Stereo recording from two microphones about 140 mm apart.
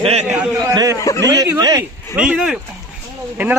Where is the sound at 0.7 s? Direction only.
25° right (ahead or behind).